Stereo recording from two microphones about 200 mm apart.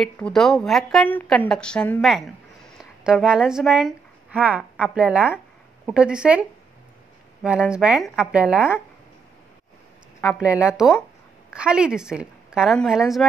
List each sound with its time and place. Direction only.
0.0 s a woman's voice: centre (ahead or behind)
7.4 s a woman's voice: 5° right (ahead or behind)
10.2 s a woman's voice: 5° right (ahead or behind)